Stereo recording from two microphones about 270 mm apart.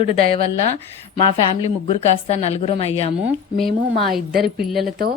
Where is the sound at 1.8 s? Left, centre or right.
Left.